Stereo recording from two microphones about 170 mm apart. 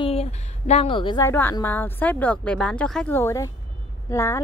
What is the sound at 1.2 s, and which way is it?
A woman's voice, 15° left (ahead or behind).